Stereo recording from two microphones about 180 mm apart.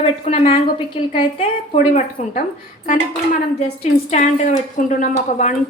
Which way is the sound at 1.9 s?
45° left (ahead or behind).